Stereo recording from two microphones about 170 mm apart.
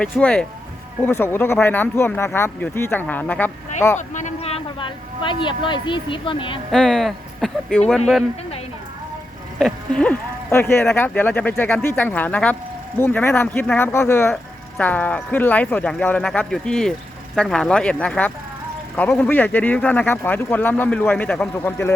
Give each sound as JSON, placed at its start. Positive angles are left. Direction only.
{"t": 0.0, "sound": "speech", "side_deg": 5}
{"t": 3.9, "sound": "speech", "side_deg": 45}
{"t": 6.7, "sound": "speech", "side_deg": 5}
{"t": 9.6, "sound": "speech", "side_deg": 5}